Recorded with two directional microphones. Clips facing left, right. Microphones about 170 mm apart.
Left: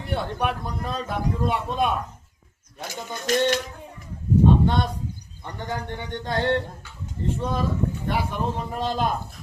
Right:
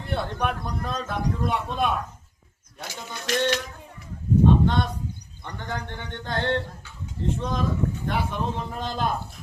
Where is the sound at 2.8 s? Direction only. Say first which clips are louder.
Left 4 dB; 45° left (ahead or behind).